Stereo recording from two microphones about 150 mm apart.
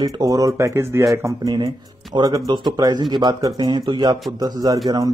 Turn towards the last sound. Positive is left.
turn(degrees=-25)  # may be behind; listen again after turning